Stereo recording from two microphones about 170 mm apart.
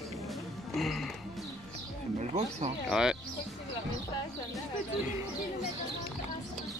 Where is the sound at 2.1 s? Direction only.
40° right (ahead or behind).